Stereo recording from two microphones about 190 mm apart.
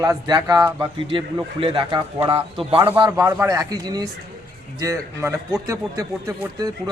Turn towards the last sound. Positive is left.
turn(degrees=-15)  # may be behind; listen again after turning